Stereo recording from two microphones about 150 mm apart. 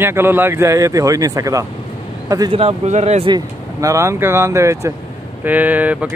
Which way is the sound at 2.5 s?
45° right (ahead or behind).